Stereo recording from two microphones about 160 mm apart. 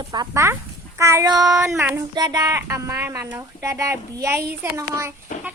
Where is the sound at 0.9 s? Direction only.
20° right (ahead or behind).